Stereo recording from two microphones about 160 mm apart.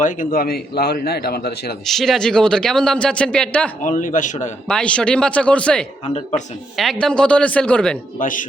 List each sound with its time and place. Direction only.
0.0 s a man's voice: 55° left (ahead or behind); by 1.7 s 80° left
1.9 s speech: centre (ahead or behind)
3.8 s speech: 55° left (ahead or behind)
4.7 s speech: 5° left (ahead or behind)
8.2 s speech: 55° left (ahead or behind)